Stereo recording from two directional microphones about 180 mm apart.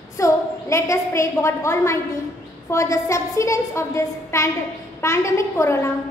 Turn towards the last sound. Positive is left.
turn(degrees=15)  # may be behind; listen again after turning